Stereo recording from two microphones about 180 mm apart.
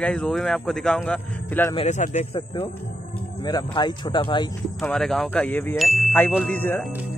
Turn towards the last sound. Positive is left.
turn(degrees=10)  # may be behind; listen again after turning